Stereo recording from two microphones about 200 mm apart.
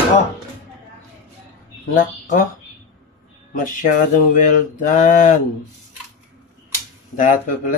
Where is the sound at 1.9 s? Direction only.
40° left (ahead or behind).